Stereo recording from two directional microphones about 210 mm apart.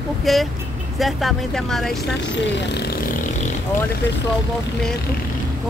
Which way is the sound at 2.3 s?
55° left (ahead or behind).